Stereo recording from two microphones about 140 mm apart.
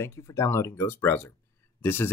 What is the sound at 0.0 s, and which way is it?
Speech, 20° left (ahead or behind).